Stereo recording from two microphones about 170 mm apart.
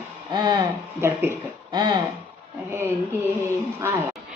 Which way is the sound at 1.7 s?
25° right (ahead or behind).